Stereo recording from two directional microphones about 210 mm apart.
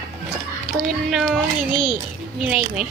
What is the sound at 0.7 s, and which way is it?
Speech, centre (ahead or behind).